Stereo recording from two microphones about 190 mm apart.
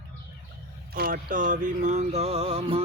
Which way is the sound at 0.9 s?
50° right (ahead or behind).